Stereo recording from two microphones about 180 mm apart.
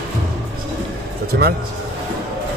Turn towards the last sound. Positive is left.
turn(degrees=-70)  # may be behind; listen again after turning